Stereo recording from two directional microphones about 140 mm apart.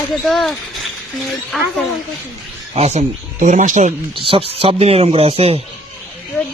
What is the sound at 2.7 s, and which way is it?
Speech, 50° right (ahead or behind).